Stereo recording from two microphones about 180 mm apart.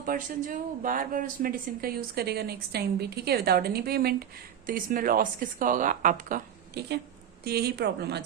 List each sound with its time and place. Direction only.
0.0 s speech: 45° right (ahead or behind); by 8.2 s 65° right (ahead or behind)